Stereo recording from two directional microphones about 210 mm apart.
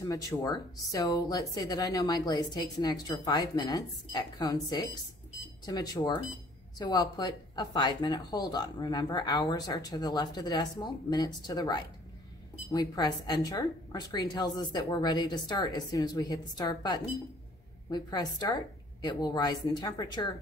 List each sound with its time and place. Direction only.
0.0 s speech: 15° left (ahead or behind)